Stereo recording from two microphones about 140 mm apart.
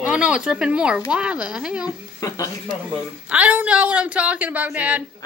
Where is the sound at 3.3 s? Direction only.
10° right (ahead or behind).